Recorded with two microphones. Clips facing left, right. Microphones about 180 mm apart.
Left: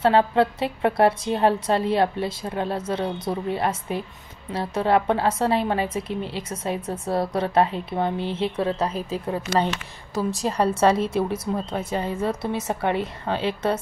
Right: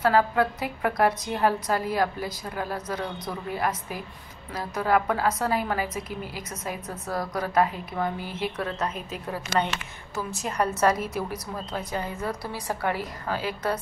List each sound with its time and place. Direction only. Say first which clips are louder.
0.0 s a woman's voice: left 3 dB; 25° left (ahead or behind)